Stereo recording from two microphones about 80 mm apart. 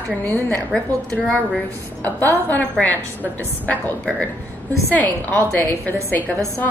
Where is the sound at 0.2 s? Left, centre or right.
Left.